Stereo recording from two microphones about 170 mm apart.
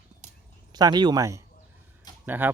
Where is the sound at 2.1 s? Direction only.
25° left (ahead or behind).